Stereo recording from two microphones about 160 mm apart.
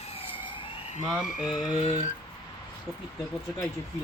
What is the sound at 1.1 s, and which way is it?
Frog, centre (ahead or behind).